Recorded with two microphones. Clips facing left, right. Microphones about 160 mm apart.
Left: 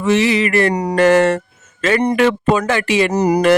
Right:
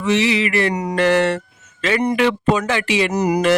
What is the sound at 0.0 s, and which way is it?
Speech, 45° left (ahead or behind).